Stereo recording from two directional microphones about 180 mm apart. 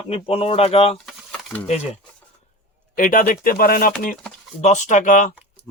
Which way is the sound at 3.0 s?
50° left (ahead or behind).